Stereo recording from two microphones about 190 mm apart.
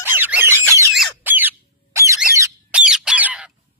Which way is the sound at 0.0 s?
10° right (ahead or behind).